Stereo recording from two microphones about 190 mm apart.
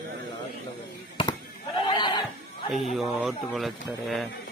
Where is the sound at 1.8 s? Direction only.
25° left (ahead or behind).